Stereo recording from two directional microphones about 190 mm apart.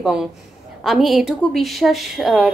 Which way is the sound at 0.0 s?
5° right (ahead or behind).